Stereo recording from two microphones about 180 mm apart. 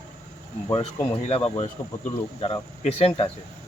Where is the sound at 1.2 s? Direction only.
35° left (ahead or behind).